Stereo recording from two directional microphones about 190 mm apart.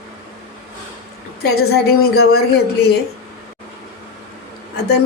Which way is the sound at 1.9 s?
55° left (ahead or behind).